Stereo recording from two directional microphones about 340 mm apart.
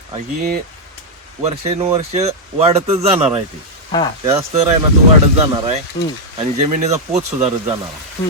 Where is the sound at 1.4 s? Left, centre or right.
Centre.